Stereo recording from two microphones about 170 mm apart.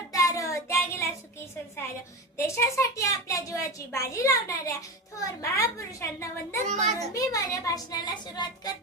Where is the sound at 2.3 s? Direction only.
15° left (ahead or behind).